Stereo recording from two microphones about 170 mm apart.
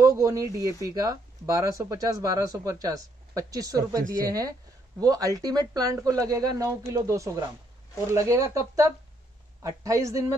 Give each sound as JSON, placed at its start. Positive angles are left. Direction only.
{"t": 0.0, "sound": "speech", "side_deg": -20}